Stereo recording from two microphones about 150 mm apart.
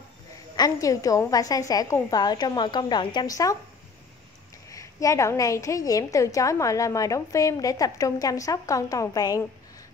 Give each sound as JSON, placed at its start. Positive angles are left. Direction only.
{"t": 0.6, "sound": "a woman's voice", "side_deg": 25}
{"t": 4.6, "sound": "a woman's voice", "side_deg": 20}